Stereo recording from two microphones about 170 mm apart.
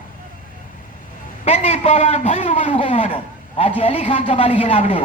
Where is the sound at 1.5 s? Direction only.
35° left (ahead or behind).